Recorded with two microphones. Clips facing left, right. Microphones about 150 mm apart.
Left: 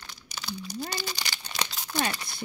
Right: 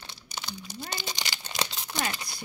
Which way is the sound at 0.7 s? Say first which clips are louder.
Left 3 dB; 25° right (ahead or behind).